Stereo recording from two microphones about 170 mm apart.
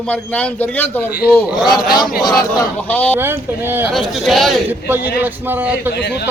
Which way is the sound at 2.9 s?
10° left (ahead or behind).